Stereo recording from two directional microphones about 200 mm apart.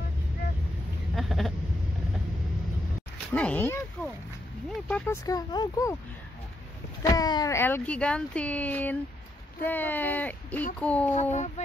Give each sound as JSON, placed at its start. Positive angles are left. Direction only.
{"t": 1.1, "sound": "a sound", "side_deg": 0}
{"t": 3.3, "sound": "speech", "side_deg": 5}
{"t": 5.0, "sound": "speech", "side_deg": 15}
{"t": 7.0, "sound": "speech", "side_deg": 20}
{"t": 11.3, "sound": "speech", "side_deg": 35}